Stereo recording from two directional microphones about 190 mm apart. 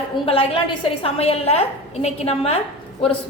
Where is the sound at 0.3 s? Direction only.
30° left (ahead or behind).